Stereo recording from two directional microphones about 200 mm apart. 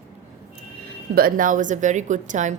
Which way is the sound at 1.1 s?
45° right (ahead or behind).